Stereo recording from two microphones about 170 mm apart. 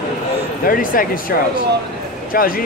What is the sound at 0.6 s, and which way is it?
Speech, 55° left (ahead or behind).